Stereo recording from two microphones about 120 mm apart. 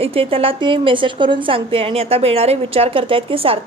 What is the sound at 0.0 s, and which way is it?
A woman's voice, 55° right (ahead or behind).